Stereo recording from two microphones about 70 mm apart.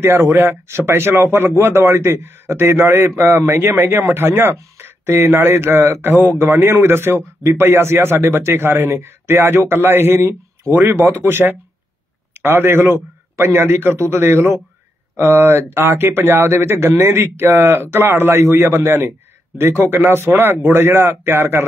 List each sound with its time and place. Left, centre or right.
0.0 s speech: right